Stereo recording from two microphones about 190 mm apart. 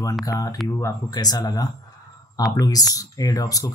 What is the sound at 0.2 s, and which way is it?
Speech, 20° left (ahead or behind).